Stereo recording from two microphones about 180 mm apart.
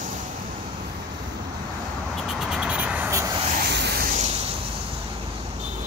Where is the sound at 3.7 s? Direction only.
70° right (ahead or behind).